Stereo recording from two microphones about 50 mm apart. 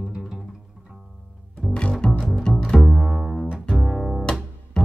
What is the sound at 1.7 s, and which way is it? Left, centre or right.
Double bass, centre.